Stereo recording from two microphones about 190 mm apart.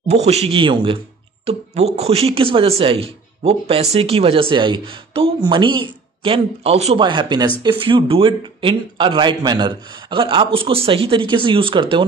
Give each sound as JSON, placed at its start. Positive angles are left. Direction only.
{"t": 0.1, "sound": "speech", "side_deg": -35}